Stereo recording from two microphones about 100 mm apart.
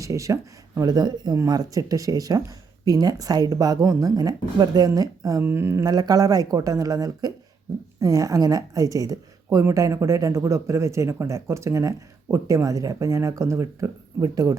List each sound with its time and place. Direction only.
0.0 s a woman's voice: 30° right (ahead or behind)
5.4 s speech: 25° right (ahead or behind)
5.8 s a woman's voice: 40° right (ahead or behind)